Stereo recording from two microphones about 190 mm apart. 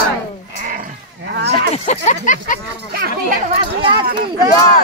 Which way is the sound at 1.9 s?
40° left (ahead or behind).